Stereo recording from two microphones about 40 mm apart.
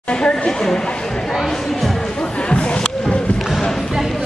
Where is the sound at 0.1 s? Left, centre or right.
Left.